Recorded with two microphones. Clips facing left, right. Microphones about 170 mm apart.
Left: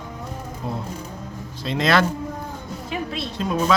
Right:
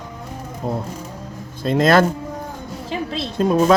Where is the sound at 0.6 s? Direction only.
40° right (ahead or behind).